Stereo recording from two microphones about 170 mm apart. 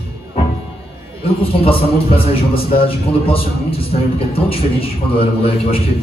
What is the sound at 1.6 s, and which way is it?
A man's voice, 35° left (ahead or behind).